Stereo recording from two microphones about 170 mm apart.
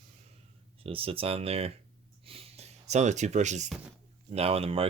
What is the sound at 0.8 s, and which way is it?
Speech, 35° right (ahead or behind).